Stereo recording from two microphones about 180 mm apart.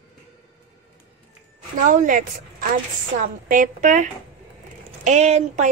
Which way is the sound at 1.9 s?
45° right (ahead or behind).